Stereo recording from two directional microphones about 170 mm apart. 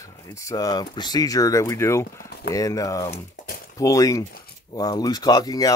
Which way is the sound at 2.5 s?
20° left (ahead or behind).